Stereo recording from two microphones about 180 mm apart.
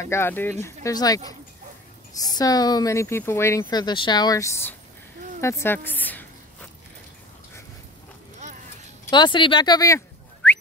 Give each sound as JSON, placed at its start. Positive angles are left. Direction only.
{"t": 0.0, "sound": "a woman's voice", "side_deg": 15}
{"t": 9.1, "sound": "speech", "side_deg": 25}